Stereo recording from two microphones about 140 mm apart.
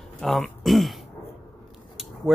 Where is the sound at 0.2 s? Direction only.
Centre (ahead or behind).